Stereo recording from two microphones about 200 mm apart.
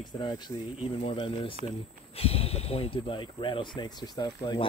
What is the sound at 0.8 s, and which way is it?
Speech, 25° left (ahead or behind).